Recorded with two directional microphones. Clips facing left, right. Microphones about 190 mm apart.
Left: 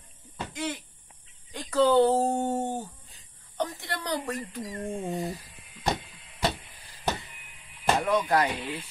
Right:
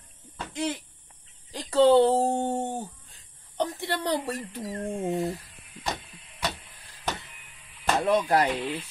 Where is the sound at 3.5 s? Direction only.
25° right (ahead or behind).